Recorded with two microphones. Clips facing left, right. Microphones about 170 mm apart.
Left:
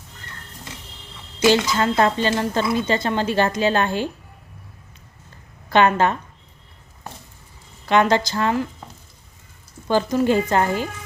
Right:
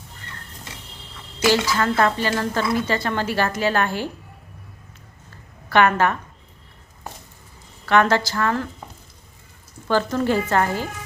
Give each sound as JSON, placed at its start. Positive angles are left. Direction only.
{"t": 1.4, "sound": "a woman's voice", "side_deg": 20}
{"t": 5.6, "sound": "a woman's voice", "side_deg": 20}
{"t": 7.9, "sound": "a woman's voice", "side_deg": 20}
{"t": 9.8, "sound": "speech", "side_deg": 15}